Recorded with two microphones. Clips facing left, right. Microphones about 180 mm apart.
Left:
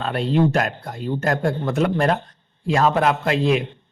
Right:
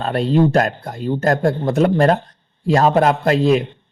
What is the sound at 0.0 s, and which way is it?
Speech, 40° right (ahead or behind).